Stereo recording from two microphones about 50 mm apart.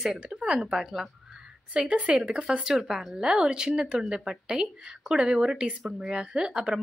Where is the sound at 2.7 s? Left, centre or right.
Centre.